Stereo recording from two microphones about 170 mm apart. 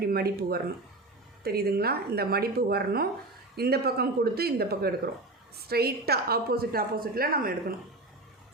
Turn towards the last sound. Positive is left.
turn(degrees=-60)  # may be behind; listen again after turning